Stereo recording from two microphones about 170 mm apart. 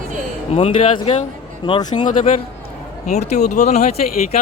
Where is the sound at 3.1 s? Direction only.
40° left (ahead or behind).